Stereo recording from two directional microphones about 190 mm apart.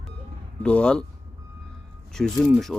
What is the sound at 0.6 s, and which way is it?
Speech, 5° left (ahead or behind).